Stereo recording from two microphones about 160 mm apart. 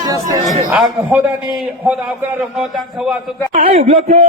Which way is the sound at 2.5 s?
Centre (ahead or behind).